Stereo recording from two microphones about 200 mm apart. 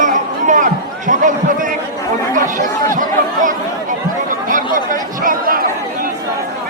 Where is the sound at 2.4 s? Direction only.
40° right (ahead or behind).